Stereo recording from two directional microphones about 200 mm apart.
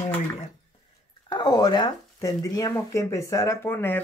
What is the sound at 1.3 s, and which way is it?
Speech, 20° left (ahead or behind).